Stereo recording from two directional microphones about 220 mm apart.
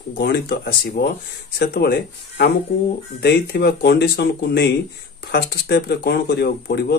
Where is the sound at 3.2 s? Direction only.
50° left (ahead or behind).